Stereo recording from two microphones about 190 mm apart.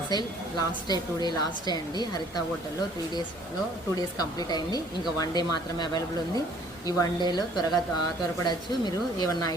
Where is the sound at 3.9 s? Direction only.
20° left (ahead or behind).